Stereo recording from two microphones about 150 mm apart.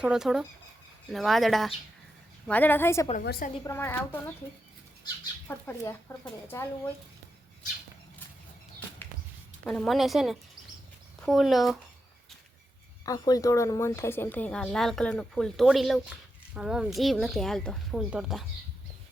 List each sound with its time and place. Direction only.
0.0 s speech: 5° right (ahead or behind)
2.5 s speech: 10° left (ahead or behind)
3.2 s a woman's voice: 85° left
3.6 s speech: 15° left (ahead or behind)
5.5 s speech: 15° left (ahead or behind)
9.6 s speech: 5° left (ahead or behind)
13.1 s speech: 25° left (ahead or behind); by 18.4 s 5° right (ahead or behind)